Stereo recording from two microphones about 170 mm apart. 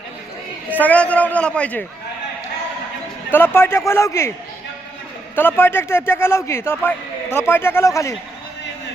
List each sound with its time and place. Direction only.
0.7 s a man's voice: 10° left (ahead or behind)
3.3 s a man's voice: 15° left (ahead or behind)
5.3 s a man's voice: 10° left (ahead or behind)